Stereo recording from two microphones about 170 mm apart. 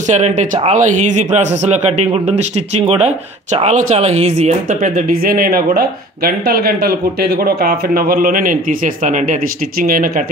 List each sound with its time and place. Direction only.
0.1 s speech: 45° right (ahead or behind)